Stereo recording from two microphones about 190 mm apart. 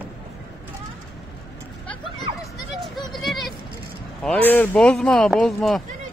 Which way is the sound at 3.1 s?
Centre (ahead or behind).